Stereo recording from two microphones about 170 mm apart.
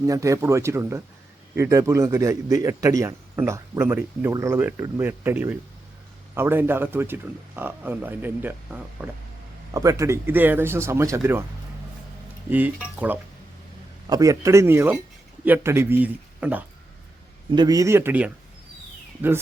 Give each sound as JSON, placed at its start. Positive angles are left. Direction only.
{"t": 0.0, "sound": "a man's voice", "side_deg": -20}
{"t": 12.5, "sound": "a man's voice", "side_deg": -10}
{"t": 14.1, "sound": "a man's voice", "side_deg": -20}
{"t": 17.5, "sound": "a man's voice", "side_deg": -25}